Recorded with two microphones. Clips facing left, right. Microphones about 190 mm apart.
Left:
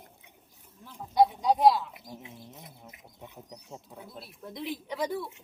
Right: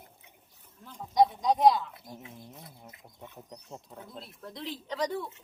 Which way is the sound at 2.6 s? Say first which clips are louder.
Even; 15° left (ahead or behind).